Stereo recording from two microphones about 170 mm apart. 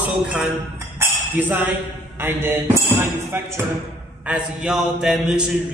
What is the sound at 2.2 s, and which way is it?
A man's voice, 10° right (ahead or behind).